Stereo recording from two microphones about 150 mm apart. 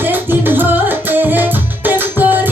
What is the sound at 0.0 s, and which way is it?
Music, 15° right (ahead or behind).